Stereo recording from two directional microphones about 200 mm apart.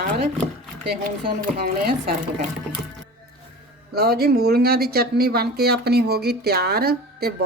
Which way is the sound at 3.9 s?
50° right (ahead or behind).